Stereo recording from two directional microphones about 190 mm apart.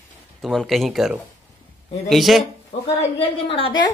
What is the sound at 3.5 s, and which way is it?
Speech, 30° left (ahead or behind).